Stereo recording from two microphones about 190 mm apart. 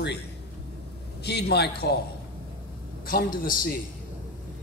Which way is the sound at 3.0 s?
50° left (ahead or behind).